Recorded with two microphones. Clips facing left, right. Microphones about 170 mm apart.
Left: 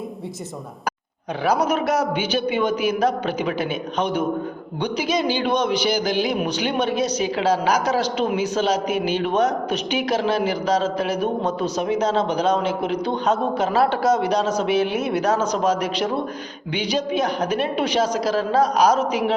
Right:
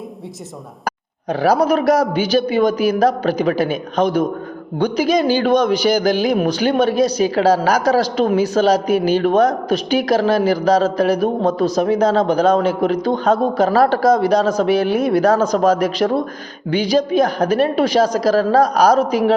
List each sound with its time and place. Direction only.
1.3 s a man's voice: 35° right (ahead or behind)